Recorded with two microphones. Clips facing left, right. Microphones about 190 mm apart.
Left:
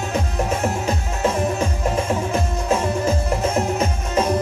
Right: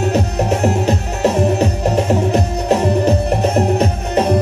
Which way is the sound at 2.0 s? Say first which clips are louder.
Right 7 dB; 40° right (ahead or behind).